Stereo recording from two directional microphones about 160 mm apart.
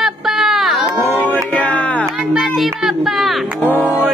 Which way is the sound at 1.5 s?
10° left (ahead or behind).